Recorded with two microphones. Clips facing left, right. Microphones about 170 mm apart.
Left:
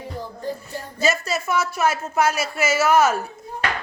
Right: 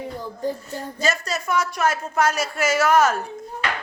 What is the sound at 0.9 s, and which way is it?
A woman's voice, 10° left (ahead or behind).